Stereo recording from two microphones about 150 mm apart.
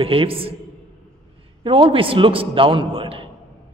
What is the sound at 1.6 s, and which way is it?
A man's voice, 35° right (ahead or behind).